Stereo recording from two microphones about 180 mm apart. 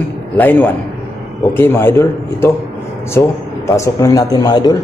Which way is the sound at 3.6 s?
15° left (ahead or behind).